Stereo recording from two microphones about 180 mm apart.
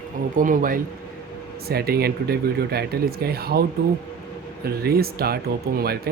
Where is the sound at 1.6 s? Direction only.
60° right (ahead or behind).